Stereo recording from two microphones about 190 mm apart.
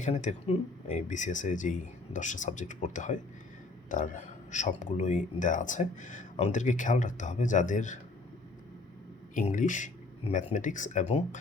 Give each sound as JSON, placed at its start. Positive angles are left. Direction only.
{"t": 0.0, "sound": "speech", "side_deg": 40}
{"t": 9.3, "sound": "speech", "side_deg": 45}